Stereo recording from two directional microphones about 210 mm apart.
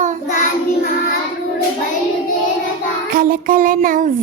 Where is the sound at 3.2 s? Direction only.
40° right (ahead or behind).